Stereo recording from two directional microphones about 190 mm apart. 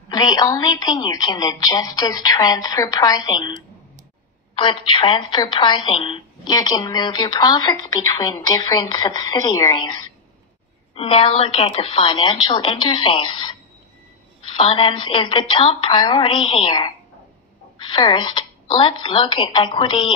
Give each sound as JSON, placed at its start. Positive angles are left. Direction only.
{"t": 0.1, "sound": "speech", "side_deg": 20}
{"t": 4.6, "sound": "speech", "side_deg": 25}
{"t": 11.0, "sound": "speech", "side_deg": 30}